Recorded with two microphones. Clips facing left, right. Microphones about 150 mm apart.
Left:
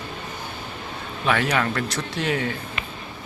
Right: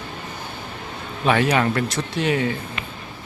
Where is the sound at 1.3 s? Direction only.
20° right (ahead or behind).